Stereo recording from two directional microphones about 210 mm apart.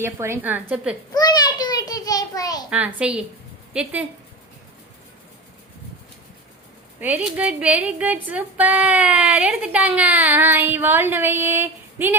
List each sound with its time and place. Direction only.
0.0 s speech: 10° right (ahead or behind)
1.1 s a sound: 20° left (ahead or behind)
2.6 s a woman's voice: 5° right (ahead or behind)
7.0 s speech: 10° right (ahead or behind)